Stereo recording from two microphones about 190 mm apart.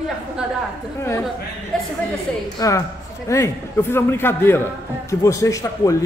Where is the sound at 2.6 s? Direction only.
15° left (ahead or behind).